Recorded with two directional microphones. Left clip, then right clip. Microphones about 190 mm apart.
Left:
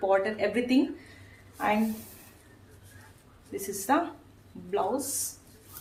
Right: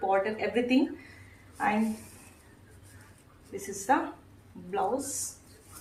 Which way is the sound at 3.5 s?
40° left (ahead or behind).